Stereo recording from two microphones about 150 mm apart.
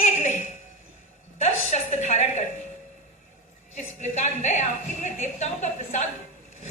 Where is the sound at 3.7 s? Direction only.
50° left (ahead or behind).